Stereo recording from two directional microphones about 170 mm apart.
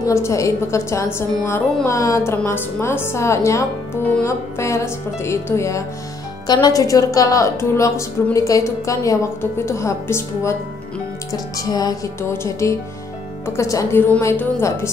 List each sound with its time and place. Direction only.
0.0 s a woman's voice: 15° left (ahead or behind)